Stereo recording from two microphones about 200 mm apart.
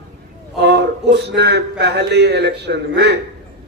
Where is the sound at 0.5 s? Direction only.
55° right (ahead or behind).